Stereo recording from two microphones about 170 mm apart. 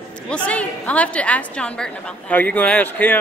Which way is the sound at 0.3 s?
10° left (ahead or behind).